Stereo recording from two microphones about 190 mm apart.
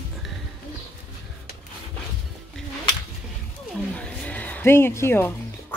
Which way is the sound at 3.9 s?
5° left (ahead or behind).